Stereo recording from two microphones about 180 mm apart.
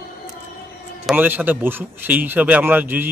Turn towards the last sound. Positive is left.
turn(degrees=-10)  # may be behind; listen again after turning